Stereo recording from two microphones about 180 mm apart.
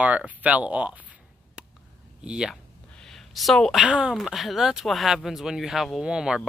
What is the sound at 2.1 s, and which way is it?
Speech, 5° right (ahead or behind).